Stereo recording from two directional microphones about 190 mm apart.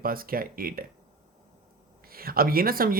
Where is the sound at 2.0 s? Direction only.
50° right (ahead or behind).